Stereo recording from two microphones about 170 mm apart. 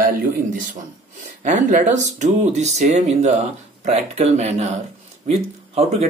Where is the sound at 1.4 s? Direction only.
50° right (ahead or behind).